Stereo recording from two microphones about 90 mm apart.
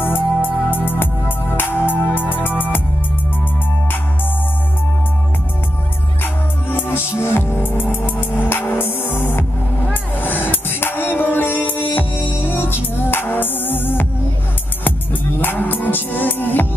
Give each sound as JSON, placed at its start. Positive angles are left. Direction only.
{"t": 0.0, "sound": "music", "side_deg": 25}
{"t": 7.2, "sound": "music", "side_deg": 25}
{"t": 15.4, "sound": "music", "side_deg": 20}